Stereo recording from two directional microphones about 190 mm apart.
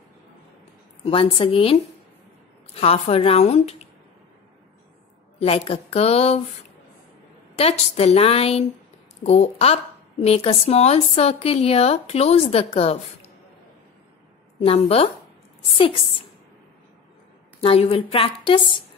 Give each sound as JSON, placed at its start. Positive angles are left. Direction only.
{"t": 1.0, "sound": "a woman's voice", "side_deg": 30}
{"t": 5.4, "sound": "a woman's voice", "side_deg": 30}
{"t": 7.5, "sound": "a woman's voice", "side_deg": 35}
{"t": 14.6, "sound": "a woman's voice", "side_deg": 30}
{"t": 17.6, "sound": "a woman's voice", "side_deg": 30}